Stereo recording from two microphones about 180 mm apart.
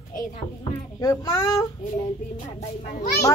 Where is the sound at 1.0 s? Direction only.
20° left (ahead or behind).